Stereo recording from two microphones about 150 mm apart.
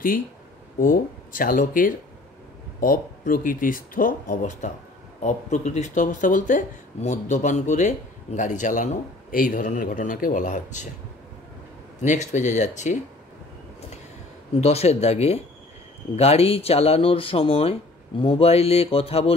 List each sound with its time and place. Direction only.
0.7 s speech: 70° left (ahead or behind)
5.2 s speech: 50° left (ahead or behind)
12.0 s speech: 50° left (ahead or behind)
14.6 s speech: 45° left (ahead or behind)